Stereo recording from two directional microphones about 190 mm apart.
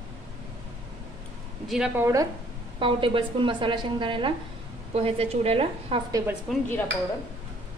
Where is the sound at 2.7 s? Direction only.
25° right (ahead or behind).